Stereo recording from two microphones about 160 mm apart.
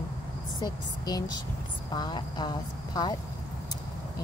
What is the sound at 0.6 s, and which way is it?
Speech, 25° left (ahead or behind).